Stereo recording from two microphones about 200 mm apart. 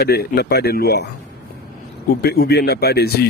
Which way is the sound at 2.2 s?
50° left (ahead or behind).